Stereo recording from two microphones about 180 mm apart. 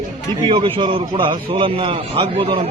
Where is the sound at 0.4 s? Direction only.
30° right (ahead or behind).